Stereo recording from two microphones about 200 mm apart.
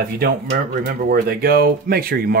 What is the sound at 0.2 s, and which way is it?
Speech, 45° right (ahead or behind).